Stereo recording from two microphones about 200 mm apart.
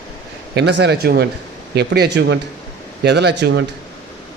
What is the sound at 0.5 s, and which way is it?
Speech, 55° right (ahead or behind).